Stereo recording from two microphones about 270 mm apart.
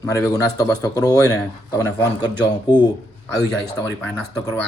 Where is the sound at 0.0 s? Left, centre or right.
Centre.